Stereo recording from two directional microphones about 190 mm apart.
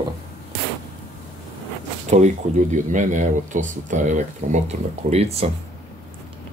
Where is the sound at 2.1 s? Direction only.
40° right (ahead or behind).